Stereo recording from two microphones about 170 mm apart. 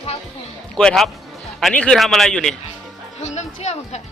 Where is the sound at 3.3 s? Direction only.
40° left (ahead or behind).